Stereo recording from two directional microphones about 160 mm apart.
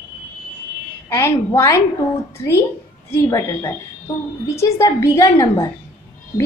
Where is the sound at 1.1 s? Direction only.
20° left (ahead or behind).